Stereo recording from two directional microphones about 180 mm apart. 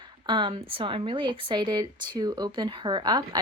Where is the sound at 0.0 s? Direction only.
25° right (ahead or behind).